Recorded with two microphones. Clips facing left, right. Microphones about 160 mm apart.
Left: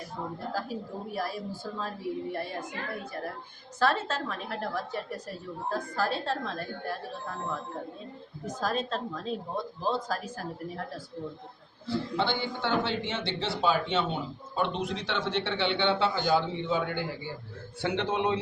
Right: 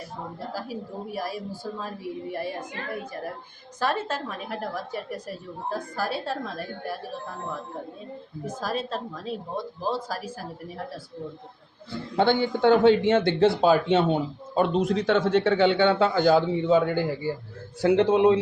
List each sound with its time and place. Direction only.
0.5 s a woman's voice: 10° right (ahead or behind)
3.8 s a woman's voice: 15° right (ahead or behind)
8.4 s a woman's voice: 5° right (ahead or behind)
12.1 s a man's voice: 50° right (ahead or behind)